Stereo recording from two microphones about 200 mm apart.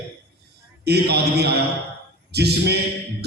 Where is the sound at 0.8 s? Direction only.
55° right (ahead or behind).